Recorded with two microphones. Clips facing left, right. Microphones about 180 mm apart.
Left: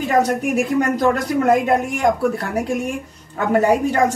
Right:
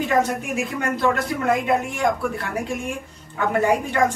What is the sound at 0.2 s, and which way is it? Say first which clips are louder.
Speech: left 5 dB; 40° left (ahead or behind).